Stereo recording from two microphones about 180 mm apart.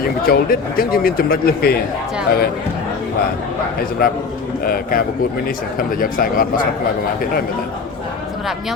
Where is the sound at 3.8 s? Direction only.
55° left (ahead or behind).